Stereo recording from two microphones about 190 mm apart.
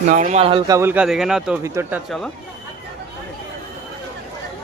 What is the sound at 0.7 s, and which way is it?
Speech, 15° right (ahead or behind).